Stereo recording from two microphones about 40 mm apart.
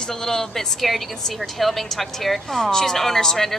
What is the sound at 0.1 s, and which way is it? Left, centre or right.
A woman's voice, centre.